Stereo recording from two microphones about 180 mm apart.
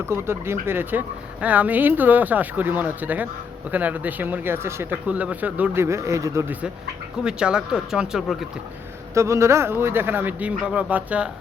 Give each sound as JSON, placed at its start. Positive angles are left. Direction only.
{"t": 0.0, "sound": "speech", "side_deg": -15}
{"t": 9.1, "sound": "speech", "side_deg": -15}